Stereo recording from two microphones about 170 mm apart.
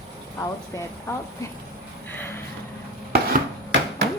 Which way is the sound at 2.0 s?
10° left (ahead or behind).